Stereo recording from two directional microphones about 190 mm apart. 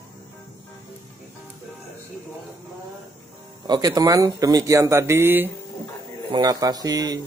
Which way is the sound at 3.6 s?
20° right (ahead or behind).